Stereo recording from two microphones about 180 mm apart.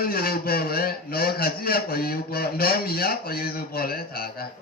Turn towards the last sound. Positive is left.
turn(degrees=55)  # may be behind; listen again after turning